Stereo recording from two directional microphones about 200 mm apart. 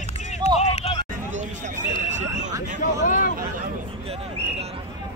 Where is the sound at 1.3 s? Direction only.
40° right (ahead or behind).